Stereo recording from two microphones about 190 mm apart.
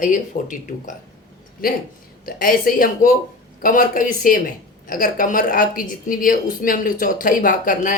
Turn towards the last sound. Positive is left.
turn(degrees=45)  # may be behind; listen again after turning